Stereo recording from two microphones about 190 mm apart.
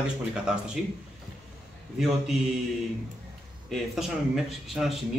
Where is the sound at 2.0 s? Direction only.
Centre (ahead or behind).